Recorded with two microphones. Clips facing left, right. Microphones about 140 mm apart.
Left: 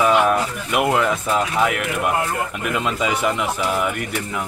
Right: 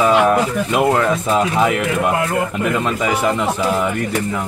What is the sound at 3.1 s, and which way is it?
Speech, 15° right (ahead or behind).